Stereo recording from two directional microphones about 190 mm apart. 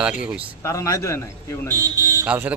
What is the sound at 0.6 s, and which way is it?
Speech, 15° left (ahead or behind).